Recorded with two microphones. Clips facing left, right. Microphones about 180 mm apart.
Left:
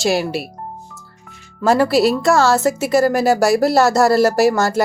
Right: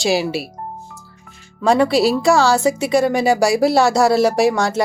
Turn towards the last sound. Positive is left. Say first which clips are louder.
# left 1 dB
turn(degrees=0)  # may be behind; listen again after turning